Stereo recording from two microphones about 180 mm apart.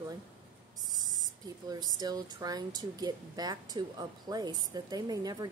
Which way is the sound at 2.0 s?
20° right (ahead or behind).